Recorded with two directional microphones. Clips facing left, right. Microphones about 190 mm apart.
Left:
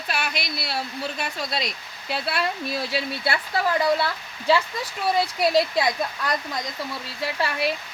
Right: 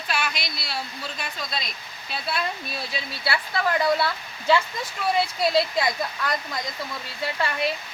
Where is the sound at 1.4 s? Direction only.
70° left (ahead or behind).